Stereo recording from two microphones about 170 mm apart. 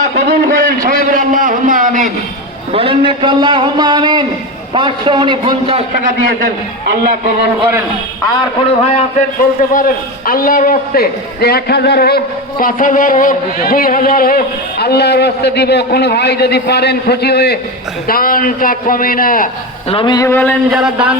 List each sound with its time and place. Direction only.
0.3 s a man's voice: 55° right (ahead or behind)
2.7 s a man's voice: 30° right (ahead or behind)
8.8 s a man's voice: 45° left (ahead or behind); by 17.6 s 70° left (ahead or behind)
18.1 s a man's voice: 55° left (ahead or behind)
19.9 s speech: 30° left (ahead or behind)
20.1 s speech: 15° left (ahead or behind)
20.7 s speech: centre (ahead or behind)